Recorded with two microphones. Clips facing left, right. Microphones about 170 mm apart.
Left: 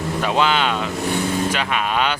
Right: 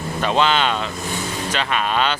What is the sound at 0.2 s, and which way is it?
Speech, 10° left (ahead or behind).